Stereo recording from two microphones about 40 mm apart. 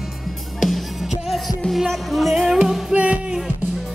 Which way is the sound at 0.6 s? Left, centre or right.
Centre.